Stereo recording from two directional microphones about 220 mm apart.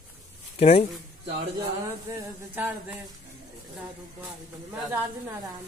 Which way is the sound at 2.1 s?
10° right (ahead or behind).